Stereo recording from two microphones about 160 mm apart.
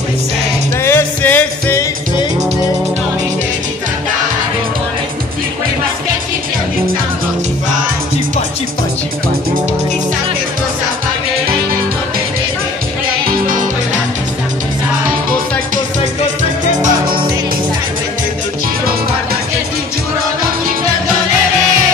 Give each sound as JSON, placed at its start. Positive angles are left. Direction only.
{"t": 0.8, "sound": "music", "side_deg": 15}
{"t": 13.3, "sound": "music", "side_deg": -60}